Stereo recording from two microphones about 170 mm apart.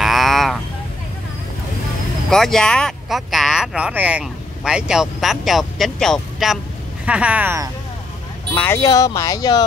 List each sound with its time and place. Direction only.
0.0 s fowl: centre (ahead or behind)
2.2 s speech: 5° left (ahead or behind)
8.5 s speech: 15° left (ahead or behind)